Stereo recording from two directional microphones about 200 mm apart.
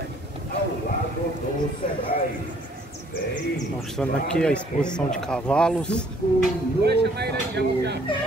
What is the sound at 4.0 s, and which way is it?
Speech, 5° left (ahead or behind).